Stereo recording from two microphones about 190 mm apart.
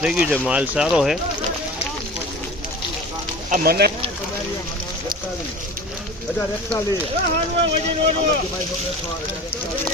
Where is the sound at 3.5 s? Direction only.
55° right (ahead or behind).